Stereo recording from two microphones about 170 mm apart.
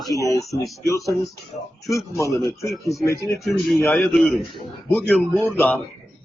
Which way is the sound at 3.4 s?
Centre (ahead or behind).